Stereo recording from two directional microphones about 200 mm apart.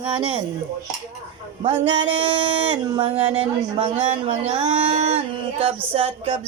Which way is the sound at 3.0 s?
30° right (ahead or behind).